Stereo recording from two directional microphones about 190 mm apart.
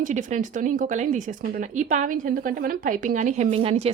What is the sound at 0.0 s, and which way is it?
Speech, 40° right (ahead or behind).